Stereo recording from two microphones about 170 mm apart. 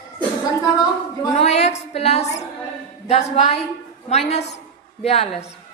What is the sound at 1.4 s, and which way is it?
A woman's voice, 40° left (ahead or behind).